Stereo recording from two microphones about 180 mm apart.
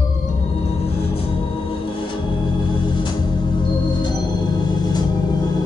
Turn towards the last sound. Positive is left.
turn(degrees=25)  # may be behind; listen again after turning